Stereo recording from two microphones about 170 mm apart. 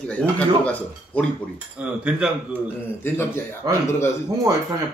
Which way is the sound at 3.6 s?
20° right (ahead or behind).